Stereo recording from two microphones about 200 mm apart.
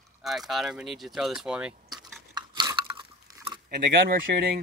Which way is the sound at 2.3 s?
20° right (ahead or behind).